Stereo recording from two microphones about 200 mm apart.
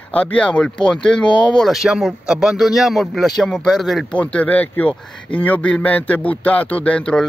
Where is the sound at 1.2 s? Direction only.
25° left (ahead or behind).